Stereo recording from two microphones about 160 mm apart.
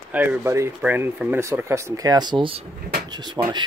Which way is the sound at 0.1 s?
10° right (ahead or behind).